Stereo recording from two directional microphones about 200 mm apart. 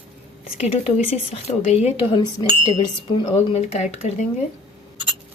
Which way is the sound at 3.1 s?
25° left (ahead or behind).